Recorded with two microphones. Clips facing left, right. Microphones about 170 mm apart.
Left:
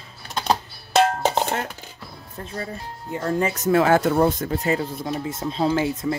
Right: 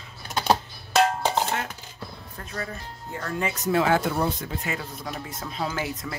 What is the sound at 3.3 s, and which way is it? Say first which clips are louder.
Speech: left 6 dB; 40° left (ahead or behind).